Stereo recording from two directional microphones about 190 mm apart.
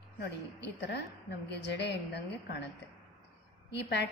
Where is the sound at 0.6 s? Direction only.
65° left (ahead or behind).